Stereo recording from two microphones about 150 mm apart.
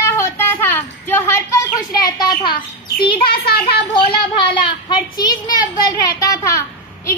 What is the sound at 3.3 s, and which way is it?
Speech, 90° left.